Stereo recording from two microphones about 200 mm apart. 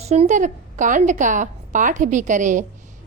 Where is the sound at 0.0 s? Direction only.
30° right (ahead or behind).